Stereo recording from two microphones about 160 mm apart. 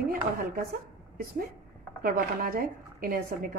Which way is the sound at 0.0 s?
65° right (ahead or behind).